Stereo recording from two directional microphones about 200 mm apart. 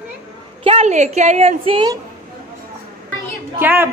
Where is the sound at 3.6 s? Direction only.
10° right (ahead or behind).